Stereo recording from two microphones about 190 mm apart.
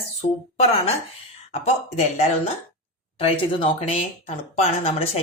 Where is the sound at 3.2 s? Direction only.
30° left (ahead or behind).